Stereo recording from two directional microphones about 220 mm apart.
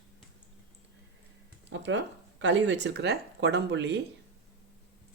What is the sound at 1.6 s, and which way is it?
Speech, 55° right (ahead or behind).